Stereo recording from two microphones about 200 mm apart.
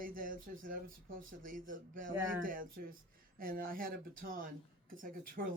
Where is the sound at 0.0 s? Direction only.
45° right (ahead or behind).